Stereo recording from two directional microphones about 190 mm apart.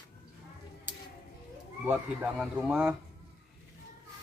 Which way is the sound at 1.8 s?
5° right (ahead or behind).